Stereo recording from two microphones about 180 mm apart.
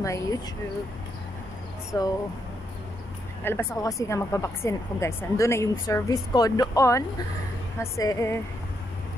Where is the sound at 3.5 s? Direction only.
15° left (ahead or behind).